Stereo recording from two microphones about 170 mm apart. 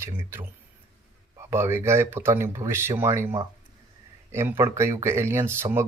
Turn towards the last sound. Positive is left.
turn(degrees=-15)  # may be behind; listen again after turning